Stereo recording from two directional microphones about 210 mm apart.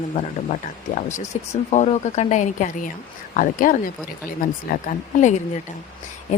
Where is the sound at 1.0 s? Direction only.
40° left (ahead or behind).